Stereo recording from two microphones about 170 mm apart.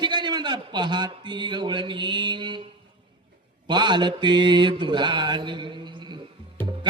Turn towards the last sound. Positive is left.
turn(degrees=-25)  # may be behind; listen again after turning